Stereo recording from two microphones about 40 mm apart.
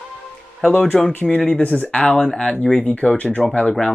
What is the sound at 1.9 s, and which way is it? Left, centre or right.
Speech, left.